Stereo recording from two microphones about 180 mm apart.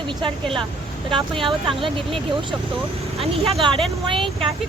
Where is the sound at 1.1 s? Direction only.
30° right (ahead or behind).